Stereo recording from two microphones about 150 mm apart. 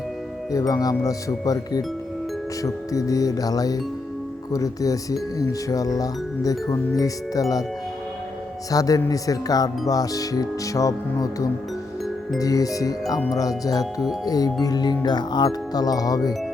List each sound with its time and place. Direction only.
0.5 s speech: 25° left (ahead or behind)
8.7 s speech: 25° left (ahead or behind)
14.3 s speech: 25° left (ahead or behind)